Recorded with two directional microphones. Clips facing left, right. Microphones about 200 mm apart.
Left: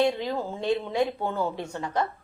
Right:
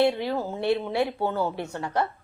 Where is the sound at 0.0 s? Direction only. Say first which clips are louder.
Right 2 dB; 10° right (ahead or behind).